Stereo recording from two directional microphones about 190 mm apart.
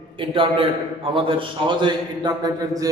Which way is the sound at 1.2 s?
25° right (ahead or behind).